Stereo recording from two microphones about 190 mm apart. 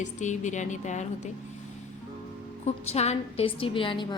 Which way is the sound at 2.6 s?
35° left (ahead or behind).